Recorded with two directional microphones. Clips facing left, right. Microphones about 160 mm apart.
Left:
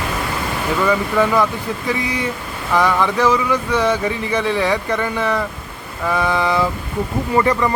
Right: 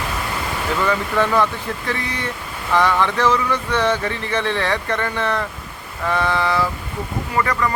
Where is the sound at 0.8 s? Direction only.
10° left (ahead or behind).